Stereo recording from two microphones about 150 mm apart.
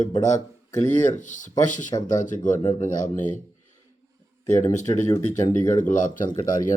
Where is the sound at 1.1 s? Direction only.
55° left (ahead or behind).